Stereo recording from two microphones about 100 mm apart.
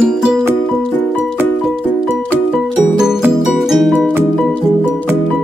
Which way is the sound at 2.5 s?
5° right (ahead or behind).